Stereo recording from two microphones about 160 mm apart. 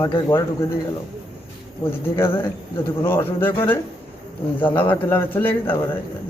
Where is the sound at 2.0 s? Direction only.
15° left (ahead or behind).